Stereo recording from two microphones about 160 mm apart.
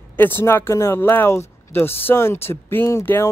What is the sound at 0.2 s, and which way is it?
Speech, 15° left (ahead or behind).